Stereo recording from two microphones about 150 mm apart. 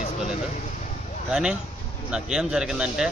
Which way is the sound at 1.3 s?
5° right (ahead or behind).